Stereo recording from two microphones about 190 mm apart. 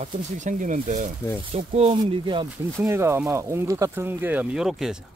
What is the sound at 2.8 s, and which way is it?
Speech, 15° right (ahead or behind).